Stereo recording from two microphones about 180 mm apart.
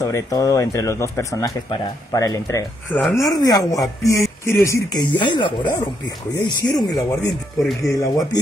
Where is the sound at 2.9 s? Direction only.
10° left (ahead or behind).